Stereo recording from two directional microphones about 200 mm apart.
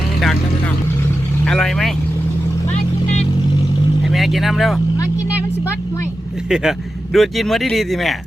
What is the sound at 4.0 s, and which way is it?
Speech, centre (ahead or behind).